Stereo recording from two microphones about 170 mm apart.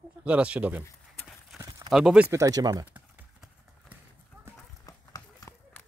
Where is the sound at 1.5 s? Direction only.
20° right (ahead or behind).